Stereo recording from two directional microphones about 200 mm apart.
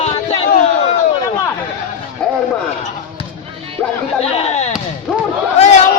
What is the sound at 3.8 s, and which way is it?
Speech, 10° left (ahead or behind).